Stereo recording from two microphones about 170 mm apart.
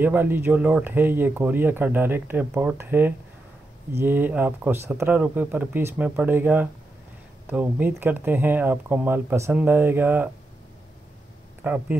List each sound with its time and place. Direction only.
0.0 s speech: 10° right (ahead or behind)
11.6 s speech: 10° right (ahead or behind)